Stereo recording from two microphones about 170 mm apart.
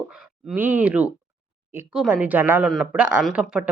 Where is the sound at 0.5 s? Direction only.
10° right (ahead or behind).